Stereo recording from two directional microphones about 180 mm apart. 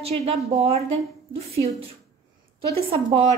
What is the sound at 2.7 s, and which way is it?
Speech, 35° right (ahead or behind).